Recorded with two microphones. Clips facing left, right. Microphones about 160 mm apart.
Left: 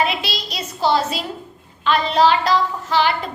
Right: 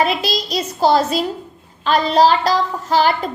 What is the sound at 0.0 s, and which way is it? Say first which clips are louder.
Child singing: right 4 dB; 40° right (ahead or behind).